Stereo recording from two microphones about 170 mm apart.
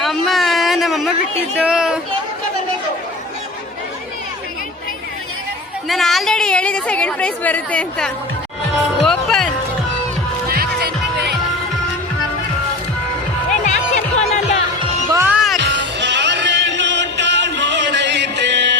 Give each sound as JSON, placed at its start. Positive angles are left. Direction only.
{"t": 0.0, "sound": "a sound", "side_deg": 0}
{"t": 1.5, "sound": "speech", "side_deg": -5}
{"t": 5.9, "sound": "a woman's voice", "side_deg": 0}
{"t": 9.0, "sound": "music", "side_deg": 5}
{"t": 10.5, "sound": "music", "side_deg": -65}
{"t": 13.5, "sound": "music", "side_deg": 45}
{"t": 15.2, "sound": "music", "side_deg": -5}
{"t": 15.6, "sound": "music", "side_deg": -90}